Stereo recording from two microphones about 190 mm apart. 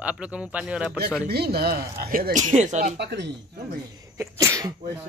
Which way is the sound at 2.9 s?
60° right (ahead or behind).